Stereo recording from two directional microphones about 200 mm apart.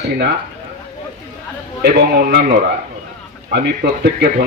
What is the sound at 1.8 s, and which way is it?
Speech, 55° right (ahead or behind).